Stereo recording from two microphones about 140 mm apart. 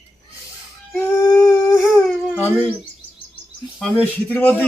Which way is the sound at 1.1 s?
25° left (ahead or behind).